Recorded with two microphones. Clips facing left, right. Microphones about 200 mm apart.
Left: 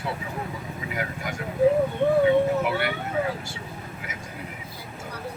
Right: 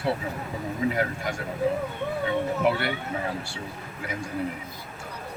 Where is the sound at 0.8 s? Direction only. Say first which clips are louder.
Right 12 dB; 35° right (ahead or behind).